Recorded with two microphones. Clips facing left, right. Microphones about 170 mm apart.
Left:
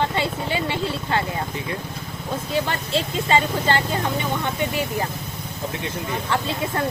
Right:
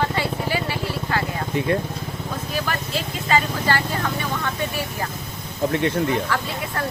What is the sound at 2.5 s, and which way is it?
Speech, 25° left (ahead or behind).